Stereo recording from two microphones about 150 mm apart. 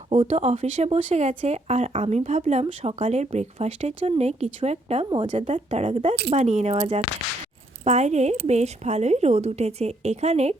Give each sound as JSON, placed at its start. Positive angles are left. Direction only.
{"t": 0.1, "sound": "speech", "side_deg": -40}
{"t": 5.0, "sound": "speech", "side_deg": -35}